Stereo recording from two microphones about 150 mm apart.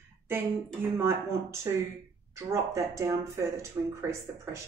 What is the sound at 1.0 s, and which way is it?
A woman's voice, 15° right (ahead or behind).